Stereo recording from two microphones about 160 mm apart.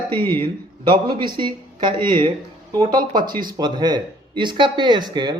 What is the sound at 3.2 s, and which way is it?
Speech, 60° right (ahead or behind).